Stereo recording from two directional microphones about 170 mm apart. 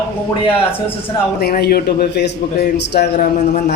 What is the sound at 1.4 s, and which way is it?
A man's voice, 70° left (ahead or behind).